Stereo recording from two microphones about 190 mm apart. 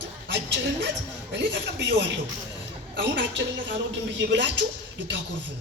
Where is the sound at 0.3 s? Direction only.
65° right (ahead or behind).